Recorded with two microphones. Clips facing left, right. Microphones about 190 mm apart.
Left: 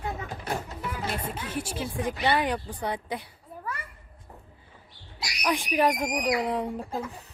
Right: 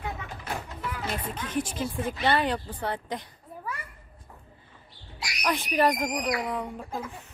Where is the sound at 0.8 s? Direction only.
10° left (ahead or behind).